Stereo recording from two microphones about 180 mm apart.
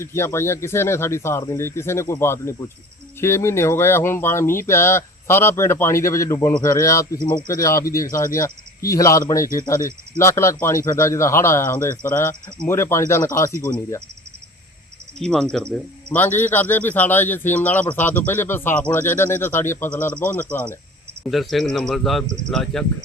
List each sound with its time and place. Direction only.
0.0 s speech: 15° left (ahead or behind)
15.2 s speech: 5° left (ahead or behind)